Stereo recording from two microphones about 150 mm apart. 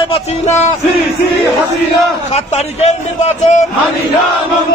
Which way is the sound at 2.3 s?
50° left (ahead or behind).